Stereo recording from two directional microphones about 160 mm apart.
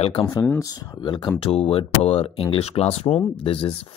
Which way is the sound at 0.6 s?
25° left (ahead or behind).